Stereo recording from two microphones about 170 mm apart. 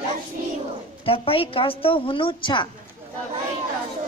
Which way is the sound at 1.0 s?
35° left (ahead or behind).